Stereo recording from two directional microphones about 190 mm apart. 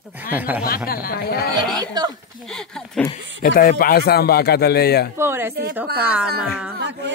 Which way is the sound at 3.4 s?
50° left (ahead or behind).